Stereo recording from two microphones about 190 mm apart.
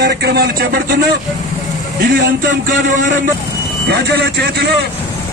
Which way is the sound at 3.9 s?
60° right (ahead or behind).